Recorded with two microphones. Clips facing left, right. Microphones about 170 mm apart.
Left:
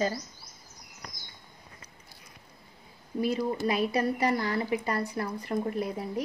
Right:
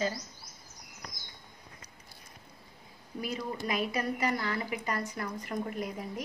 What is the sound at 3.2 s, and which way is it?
A woman's voice, 30° left (ahead or behind).